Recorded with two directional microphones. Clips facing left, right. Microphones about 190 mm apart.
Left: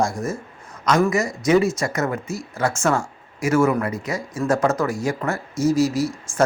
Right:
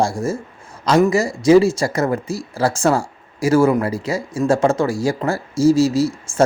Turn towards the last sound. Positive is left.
turn(degrees=-25)  # may be behind; listen again after turning